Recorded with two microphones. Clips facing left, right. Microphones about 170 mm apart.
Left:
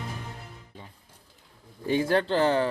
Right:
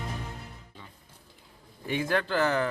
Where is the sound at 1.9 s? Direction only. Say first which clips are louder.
Left 4 dB; 30° left (ahead or behind).